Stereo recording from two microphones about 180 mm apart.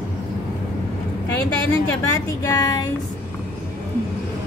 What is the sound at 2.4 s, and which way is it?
Music, 20° left (ahead or behind).